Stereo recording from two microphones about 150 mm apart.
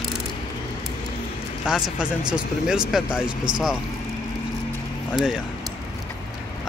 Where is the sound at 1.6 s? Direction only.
5° right (ahead or behind).